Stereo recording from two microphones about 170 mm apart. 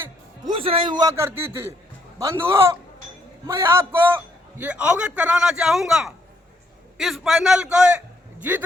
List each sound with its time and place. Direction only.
0.5 s a man's voice: 30° right (ahead or behind); by 8.6 s 10° right (ahead or behind)